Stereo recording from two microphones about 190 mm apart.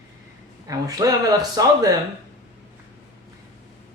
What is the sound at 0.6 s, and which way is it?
Speech, 20° right (ahead or behind).